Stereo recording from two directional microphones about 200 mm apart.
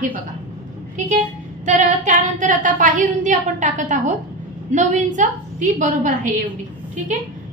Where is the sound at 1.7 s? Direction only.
40° right (ahead or behind).